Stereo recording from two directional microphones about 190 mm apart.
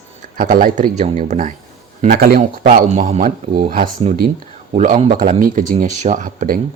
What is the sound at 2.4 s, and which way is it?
Speech, 40° right (ahead or behind).